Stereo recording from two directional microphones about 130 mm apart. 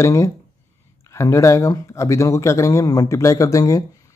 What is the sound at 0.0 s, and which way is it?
Speech, 25° left (ahead or behind).